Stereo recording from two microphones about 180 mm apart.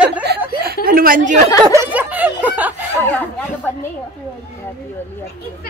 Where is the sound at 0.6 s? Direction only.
55° right (ahead or behind).